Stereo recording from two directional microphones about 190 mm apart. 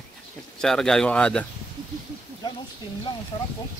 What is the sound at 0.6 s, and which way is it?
Speech, 5° left (ahead or behind).